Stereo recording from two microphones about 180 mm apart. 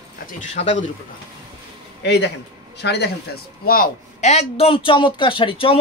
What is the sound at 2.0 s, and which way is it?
A man's voice, 75° left (ahead or behind).